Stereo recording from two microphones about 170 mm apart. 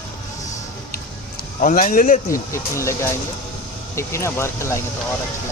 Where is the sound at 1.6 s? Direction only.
50° left (ahead or behind).